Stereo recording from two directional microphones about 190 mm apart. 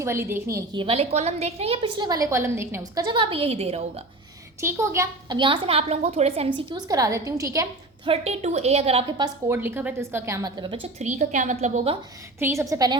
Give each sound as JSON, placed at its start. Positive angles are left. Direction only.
{"t": 0.0, "sound": "a woman's voice", "side_deg": -15}
{"t": 4.6, "sound": "a woman's voice", "side_deg": -15}
{"t": 6.6, "sound": "a woman's voice", "side_deg": -25}
{"t": 8.1, "sound": "a woman's voice", "side_deg": -35}
{"t": 9.5, "sound": "a woman's voice", "side_deg": -10}
{"t": 11.0, "sound": "a woman's voice", "side_deg": -40}
{"t": 12.4, "sound": "a woman's voice", "side_deg": -15}